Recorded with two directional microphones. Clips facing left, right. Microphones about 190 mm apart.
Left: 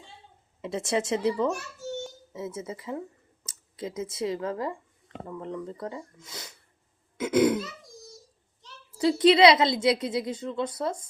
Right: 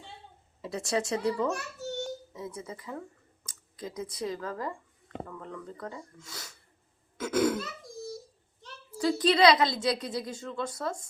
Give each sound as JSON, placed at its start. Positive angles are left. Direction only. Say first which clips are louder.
{"t": 0.6, "sound": "a woman's voice", "louder": "left 3 dB", "side_deg": 20}
{"t": 7.2, "sound": "throat clearing", "louder": "left 4 dB", "side_deg": 20}
{"t": 9.0, "sound": "a woman's voice", "louder": "left 5 dB", "side_deg": 20}